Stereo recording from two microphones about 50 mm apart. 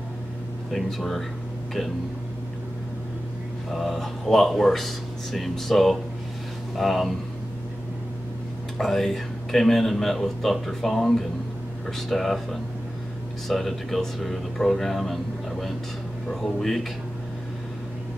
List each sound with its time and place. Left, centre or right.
0.7 s speech: centre
3.7 s speech: centre
8.7 s speech: centre
16.3 s speech: centre